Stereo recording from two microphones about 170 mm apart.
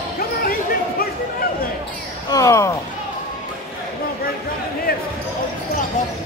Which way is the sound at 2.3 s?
20° left (ahead or behind).